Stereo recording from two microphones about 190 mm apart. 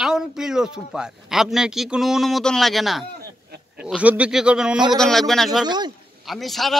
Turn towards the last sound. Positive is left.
turn(degrees=0)  # may be behind; listen again after turning